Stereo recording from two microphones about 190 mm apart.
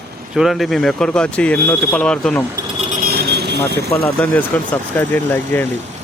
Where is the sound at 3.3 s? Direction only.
60° right (ahead or behind).